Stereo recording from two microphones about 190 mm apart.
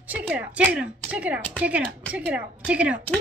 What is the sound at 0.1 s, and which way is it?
A woman's voice, 10° right (ahead or behind).